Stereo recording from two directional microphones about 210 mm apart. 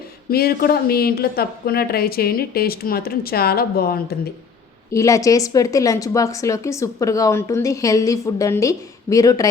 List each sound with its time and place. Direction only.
0.3 s speech: 45° left (ahead or behind)
4.9 s a woman's voice: 15° left (ahead or behind)